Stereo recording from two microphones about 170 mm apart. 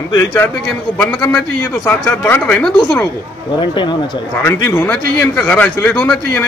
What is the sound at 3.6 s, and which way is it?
Speech, 25° left (ahead or behind).